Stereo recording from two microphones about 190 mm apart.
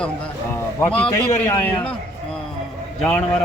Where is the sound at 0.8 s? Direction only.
5° left (ahead or behind).